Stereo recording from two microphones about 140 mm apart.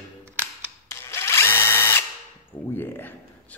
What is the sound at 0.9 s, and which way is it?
Drill, 20° left (ahead or behind).